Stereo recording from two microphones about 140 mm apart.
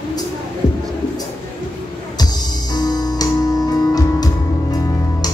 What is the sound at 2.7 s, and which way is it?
Music, 30° left (ahead or behind).